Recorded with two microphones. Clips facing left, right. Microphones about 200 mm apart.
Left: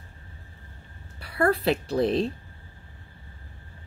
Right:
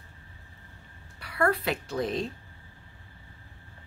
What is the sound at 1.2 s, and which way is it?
A woman's voice, 30° left (ahead or behind).